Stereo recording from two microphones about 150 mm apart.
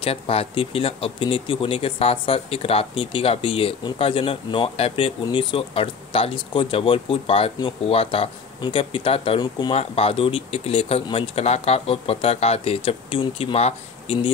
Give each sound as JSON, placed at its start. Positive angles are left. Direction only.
{"t": 0.0, "sound": "speech", "side_deg": 40}
{"t": 9.8, "sound": "speech", "side_deg": 40}